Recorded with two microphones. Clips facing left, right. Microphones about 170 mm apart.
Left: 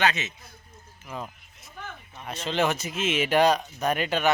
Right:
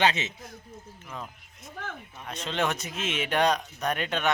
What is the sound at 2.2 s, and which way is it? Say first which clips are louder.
A man's voice: left 3 dB; centre (ahead or behind).